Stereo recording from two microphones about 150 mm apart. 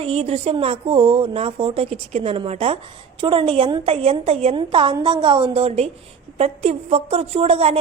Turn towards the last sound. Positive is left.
turn(degrees=-40)  # may be behind; listen again after turning